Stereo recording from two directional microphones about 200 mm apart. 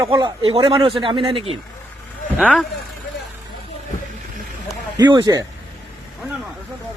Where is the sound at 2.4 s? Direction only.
5° left (ahead or behind).